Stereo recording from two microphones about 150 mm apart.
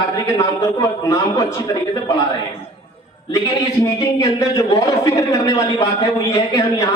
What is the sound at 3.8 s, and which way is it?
A man's voice, 20° left (ahead or behind).